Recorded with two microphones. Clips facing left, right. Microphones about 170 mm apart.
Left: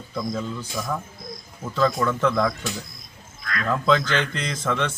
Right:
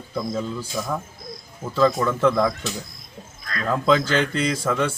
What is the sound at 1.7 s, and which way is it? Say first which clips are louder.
Speech: right 3 dB; 5° right (ahead or behind).